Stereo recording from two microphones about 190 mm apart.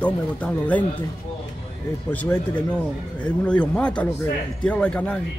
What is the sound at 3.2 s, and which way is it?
Speech, 5° left (ahead or behind).